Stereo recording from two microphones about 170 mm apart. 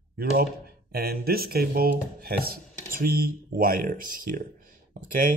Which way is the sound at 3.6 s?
55° right (ahead or behind).